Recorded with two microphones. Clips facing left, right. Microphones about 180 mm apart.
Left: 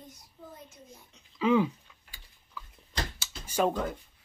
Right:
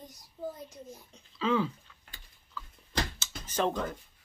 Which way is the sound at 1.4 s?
15° left (ahead or behind).